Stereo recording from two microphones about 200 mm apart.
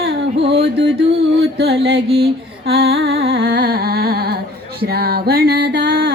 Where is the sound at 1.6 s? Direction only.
55° right (ahead or behind).